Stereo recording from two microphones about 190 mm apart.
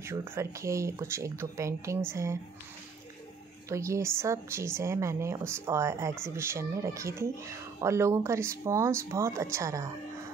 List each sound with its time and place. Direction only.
0.0 s speech: 15° right (ahead or behind)
3.6 s speech: 15° right (ahead or behind)